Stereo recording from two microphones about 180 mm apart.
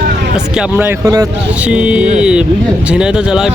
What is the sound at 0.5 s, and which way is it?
Speech, 5° right (ahead or behind).